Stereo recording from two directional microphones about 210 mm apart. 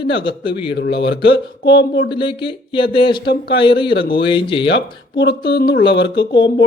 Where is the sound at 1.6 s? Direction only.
55° left (ahead or behind).